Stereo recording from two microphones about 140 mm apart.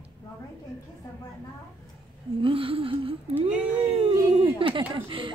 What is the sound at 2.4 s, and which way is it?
Speech, 40° right (ahead or behind).